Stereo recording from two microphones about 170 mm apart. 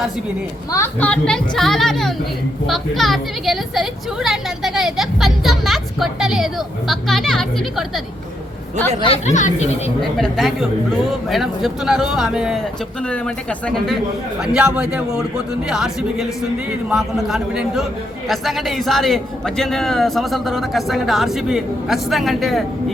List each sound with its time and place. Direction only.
0.7 s a woman's voice: 10° left (ahead or behind)
9.0 s speech: 40° left (ahead or behind)
10.0 s a woman's voice: centre (ahead or behind)
13.0 s a woman's voice: 5° left (ahead or behind)